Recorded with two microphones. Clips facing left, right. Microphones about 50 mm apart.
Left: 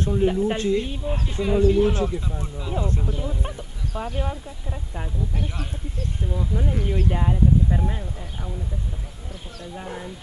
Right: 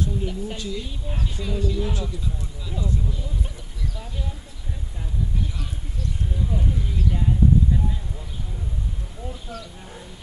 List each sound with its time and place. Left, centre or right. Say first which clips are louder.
0.0 s speech: left 7 dB; left
9.6 s speech: left 6 dB; left